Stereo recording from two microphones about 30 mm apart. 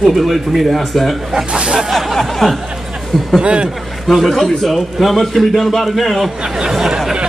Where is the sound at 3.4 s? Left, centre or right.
Right.